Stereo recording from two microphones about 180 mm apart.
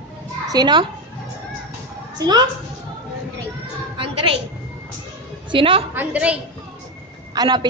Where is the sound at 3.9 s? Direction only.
30° right (ahead or behind).